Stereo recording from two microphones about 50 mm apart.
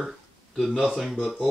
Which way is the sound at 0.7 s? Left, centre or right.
Centre.